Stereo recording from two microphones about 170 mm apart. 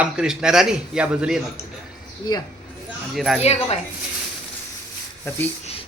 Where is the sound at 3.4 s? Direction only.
40° left (ahead or behind).